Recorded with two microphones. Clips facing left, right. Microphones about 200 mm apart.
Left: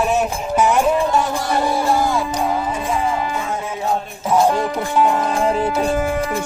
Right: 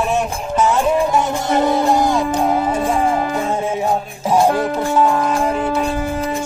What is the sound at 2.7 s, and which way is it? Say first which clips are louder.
Music: right 4 dB; 45° right (ahead or behind).